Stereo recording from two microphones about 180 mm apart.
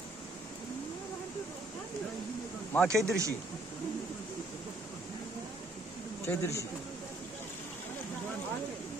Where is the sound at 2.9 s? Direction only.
15° right (ahead or behind).